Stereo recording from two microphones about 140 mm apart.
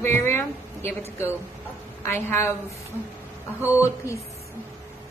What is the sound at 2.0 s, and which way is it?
Speech, 20° left (ahead or behind).